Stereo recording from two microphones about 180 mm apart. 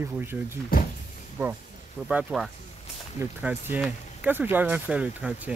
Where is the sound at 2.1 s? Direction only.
5° right (ahead or behind).